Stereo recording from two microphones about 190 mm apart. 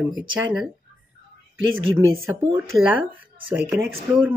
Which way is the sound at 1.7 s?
90° right.